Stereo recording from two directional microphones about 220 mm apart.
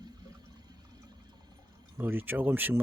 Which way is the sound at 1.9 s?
10° right (ahead or behind).